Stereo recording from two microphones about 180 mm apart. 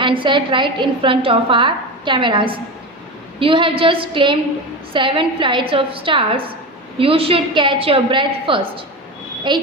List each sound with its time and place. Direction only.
0.0 s a woman's voice: 30° right (ahead or behind)